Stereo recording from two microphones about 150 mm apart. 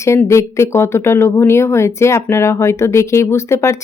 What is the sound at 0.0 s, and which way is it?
Speech, 20° left (ahead or behind).